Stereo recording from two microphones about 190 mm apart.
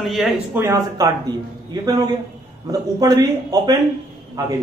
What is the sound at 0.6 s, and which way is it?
Speech, 15° right (ahead or behind).